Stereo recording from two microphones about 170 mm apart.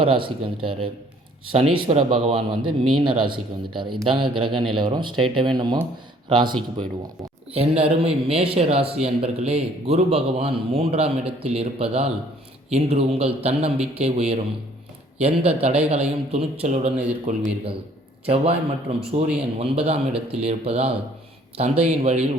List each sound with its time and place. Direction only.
0.3 s a man's voice: 30° right (ahead or behind)